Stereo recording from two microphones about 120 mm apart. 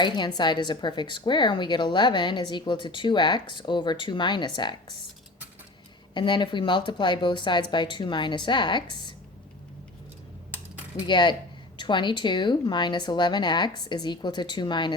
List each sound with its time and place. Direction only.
0.0 s speech: 35° left (ahead or behind)
6.1 s speech: 40° left (ahead or behind)
11.0 s speech: 40° left (ahead or behind)